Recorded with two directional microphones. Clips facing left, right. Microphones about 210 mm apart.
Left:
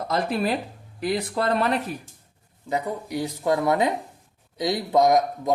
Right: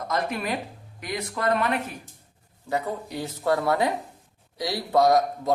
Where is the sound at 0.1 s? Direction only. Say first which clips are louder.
Left 4 dB; 30° left (ahead or behind).